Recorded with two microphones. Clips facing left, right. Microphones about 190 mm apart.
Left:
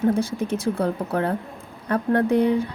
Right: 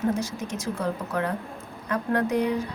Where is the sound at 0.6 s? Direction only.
30° left (ahead or behind).